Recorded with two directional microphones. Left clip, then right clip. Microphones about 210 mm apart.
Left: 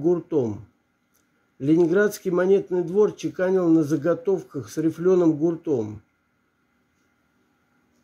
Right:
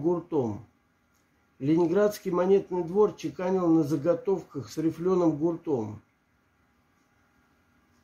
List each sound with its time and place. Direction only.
0.0 s speech: 25° left (ahead or behind)
1.6 s speech: 25° left (ahead or behind)